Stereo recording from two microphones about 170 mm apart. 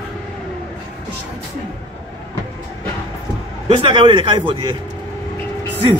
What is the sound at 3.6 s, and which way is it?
A man's voice, 30° right (ahead or behind).